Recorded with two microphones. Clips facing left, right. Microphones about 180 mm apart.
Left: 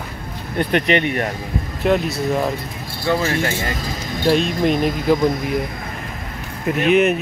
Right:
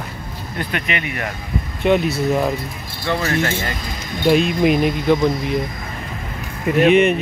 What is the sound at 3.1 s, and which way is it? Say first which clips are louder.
Speech: left 1 dB; 15° left (ahead or behind).